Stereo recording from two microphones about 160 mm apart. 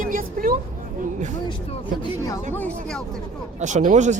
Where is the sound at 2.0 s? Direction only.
20° left (ahead or behind).